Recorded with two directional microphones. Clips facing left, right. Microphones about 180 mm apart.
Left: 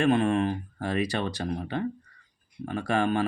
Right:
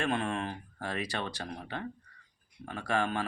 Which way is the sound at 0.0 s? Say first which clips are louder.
Left 9 dB; 15° left (ahead or behind).